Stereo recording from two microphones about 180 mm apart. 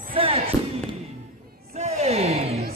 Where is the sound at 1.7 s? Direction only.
35° right (ahead or behind).